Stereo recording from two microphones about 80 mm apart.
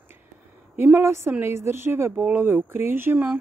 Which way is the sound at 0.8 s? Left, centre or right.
Right.